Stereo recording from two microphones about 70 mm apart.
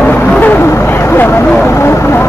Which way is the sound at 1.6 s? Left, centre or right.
Left.